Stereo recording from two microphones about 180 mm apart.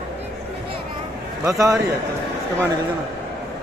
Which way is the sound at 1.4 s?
20° right (ahead or behind).